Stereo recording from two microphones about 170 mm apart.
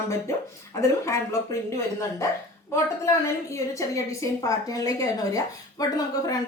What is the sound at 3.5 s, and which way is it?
Speech, 20° left (ahead or behind).